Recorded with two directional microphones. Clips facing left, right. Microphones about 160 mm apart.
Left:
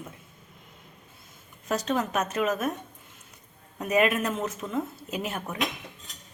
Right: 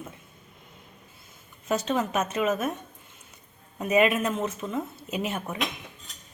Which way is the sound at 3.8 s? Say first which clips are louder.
Right 2 dB; centre (ahead or behind).